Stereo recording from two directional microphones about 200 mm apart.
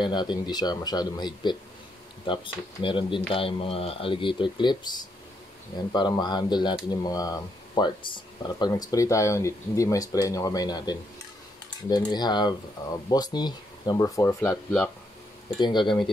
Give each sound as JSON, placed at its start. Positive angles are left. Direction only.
{"t": 0.0, "sound": "speech", "side_deg": 20}
{"t": 14.5, "sound": "speech", "side_deg": 0}
{"t": 15.6, "sound": "speech", "side_deg": 25}